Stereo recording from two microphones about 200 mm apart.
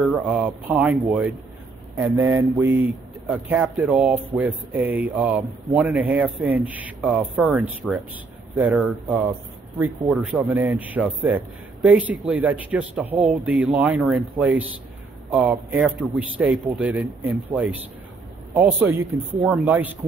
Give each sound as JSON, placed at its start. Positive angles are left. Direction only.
{"t": 0.0, "sound": "speech", "side_deg": -10}
{"t": 18.5, "sound": "speech", "side_deg": -10}